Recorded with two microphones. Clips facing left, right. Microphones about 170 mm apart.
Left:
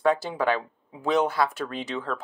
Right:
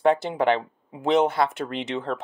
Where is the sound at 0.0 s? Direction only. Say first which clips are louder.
Right 3 dB; 25° right (ahead or behind).